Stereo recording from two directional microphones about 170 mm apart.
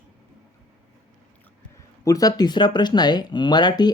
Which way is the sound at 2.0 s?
20° left (ahead or behind).